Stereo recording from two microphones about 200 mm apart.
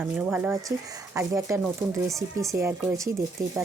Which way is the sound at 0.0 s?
10° right (ahead or behind).